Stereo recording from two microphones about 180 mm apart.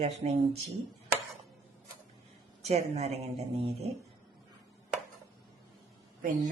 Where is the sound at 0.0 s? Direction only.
35° right (ahead or behind).